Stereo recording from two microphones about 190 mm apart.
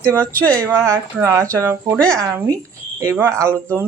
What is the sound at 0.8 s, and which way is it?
Speech, 15° right (ahead or behind).